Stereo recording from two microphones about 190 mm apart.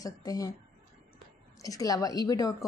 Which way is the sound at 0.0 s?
20° left (ahead or behind).